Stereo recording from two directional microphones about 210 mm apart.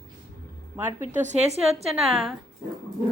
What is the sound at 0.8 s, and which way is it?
Speech, 10° right (ahead or behind).